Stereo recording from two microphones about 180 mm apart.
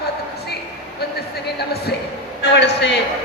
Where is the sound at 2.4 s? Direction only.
70° left (ahead or behind).